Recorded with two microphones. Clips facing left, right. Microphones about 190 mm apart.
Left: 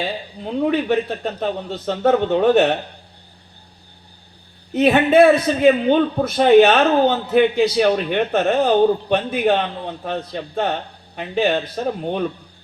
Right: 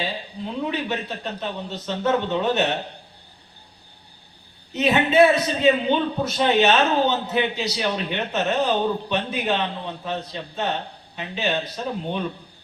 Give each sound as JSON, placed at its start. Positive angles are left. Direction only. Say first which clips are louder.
{"t": 0.6, "sound": "a man's voice", "louder": "left 9 dB", "side_deg": 55}
{"t": 4.7, "sound": "a man's voice", "louder": "left 6 dB", "side_deg": 55}